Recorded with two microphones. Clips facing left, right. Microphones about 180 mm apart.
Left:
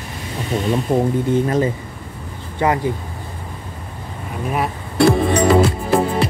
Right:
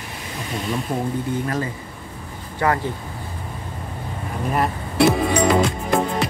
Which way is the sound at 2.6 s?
20° left (ahead or behind).